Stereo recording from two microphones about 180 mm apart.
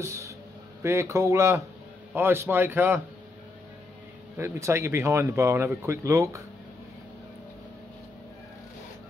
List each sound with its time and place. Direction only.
0.0 s a sound: 15° right (ahead or behind)
0.8 s speech: 15° right (ahead or behind)
4.4 s speech: 15° right (ahead or behind)